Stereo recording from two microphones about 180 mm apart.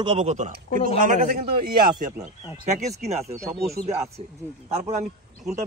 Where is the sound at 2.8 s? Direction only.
40° right (ahead or behind).